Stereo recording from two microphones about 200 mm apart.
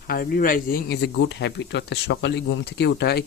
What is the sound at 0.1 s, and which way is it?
Speech, 45° left (ahead or behind).